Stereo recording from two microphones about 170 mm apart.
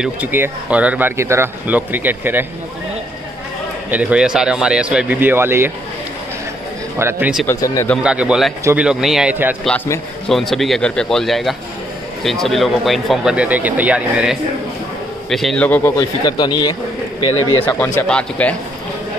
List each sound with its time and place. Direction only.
0.0 s speech: 10° right (ahead or behind)
3.9 s speech: 5° right (ahead or behind)
7.0 s speech: 10° right (ahead or behind)
7.4 s a man's voice: 15° left (ahead or behind)
8.0 s speech: 5° right (ahead or behind)
10.2 s a man's voice: centre (ahead or behind); by 16.7 s 25° left (ahead or behind)
17.2 s speech: 35° left (ahead or behind)
17.6 s speech: 20° left (ahead or behind)
18.0 s a man's voice: 5° left (ahead or behind)